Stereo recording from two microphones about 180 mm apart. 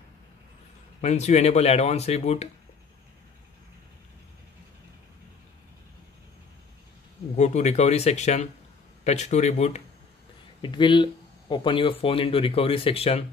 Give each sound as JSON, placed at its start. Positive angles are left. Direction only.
{"t": 1.0, "sound": "speech", "side_deg": 40}
{"t": 7.3, "sound": "speech", "side_deg": 40}
{"t": 10.6, "sound": "speech", "side_deg": 25}